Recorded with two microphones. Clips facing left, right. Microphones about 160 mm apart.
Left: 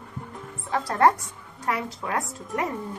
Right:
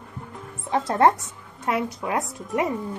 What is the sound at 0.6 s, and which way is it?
Speech, 20° right (ahead or behind).